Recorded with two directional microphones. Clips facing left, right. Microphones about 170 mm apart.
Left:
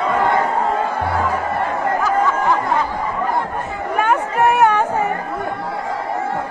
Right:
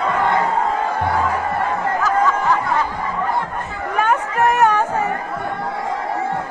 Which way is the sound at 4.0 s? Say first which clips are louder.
Left 1 dB; 10° left (ahead or behind).